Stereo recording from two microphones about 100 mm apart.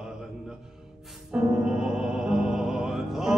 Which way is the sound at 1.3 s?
10° right (ahead or behind).